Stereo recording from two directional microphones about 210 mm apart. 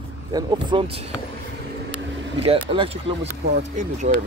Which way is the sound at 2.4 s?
25° right (ahead or behind).